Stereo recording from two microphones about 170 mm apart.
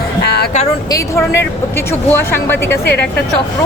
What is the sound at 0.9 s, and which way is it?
Speech, 15° left (ahead or behind).